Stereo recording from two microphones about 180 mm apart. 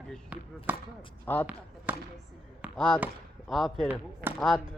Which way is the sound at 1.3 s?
10° left (ahead or behind).